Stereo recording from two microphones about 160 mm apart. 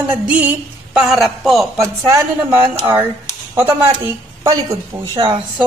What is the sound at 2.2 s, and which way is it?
Speech, 15° right (ahead or behind).